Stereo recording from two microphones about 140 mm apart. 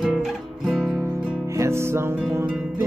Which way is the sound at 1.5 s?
20° right (ahead or behind).